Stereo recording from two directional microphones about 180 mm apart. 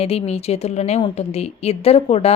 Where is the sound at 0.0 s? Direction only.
35° left (ahead or behind).